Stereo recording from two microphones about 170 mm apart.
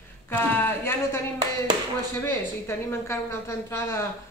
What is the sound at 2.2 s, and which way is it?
A woman's voice, 15° left (ahead or behind).